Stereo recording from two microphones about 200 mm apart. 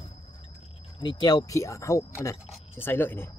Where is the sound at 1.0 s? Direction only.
20° left (ahead or behind).